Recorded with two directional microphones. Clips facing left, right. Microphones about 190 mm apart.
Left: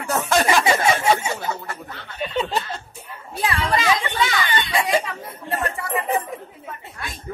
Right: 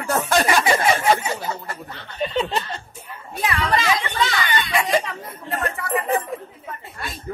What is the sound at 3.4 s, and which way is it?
Speech, 30° left (ahead or behind).